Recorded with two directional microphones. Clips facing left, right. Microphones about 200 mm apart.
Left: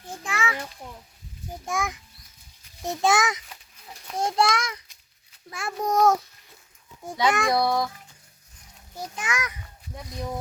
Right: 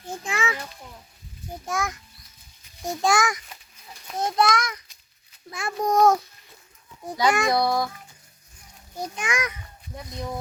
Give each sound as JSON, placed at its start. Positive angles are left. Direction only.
{"t": 0.3, "sound": "a sound", "side_deg": -25}
{"t": 1.6, "sound": "a child's voice", "side_deg": 0}
{"t": 3.1, "sound": "a child's voice", "side_deg": 20}
{"t": 5.5, "sound": "a child's voice", "side_deg": 5}
{"t": 7.2, "sound": "a child's voice", "side_deg": 0}
{"t": 9.1, "sound": "a child's voice", "side_deg": -20}